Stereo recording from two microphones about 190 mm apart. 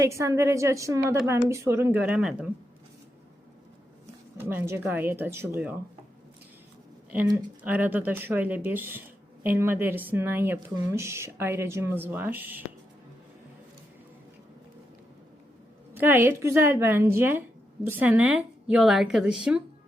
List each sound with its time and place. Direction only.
0.0 s speech: 15° right (ahead or behind)
4.4 s speech: 10° right (ahead or behind)
7.6 s speech: 10° right (ahead or behind)
16.0 s a woman's voice: 10° right (ahead or behind)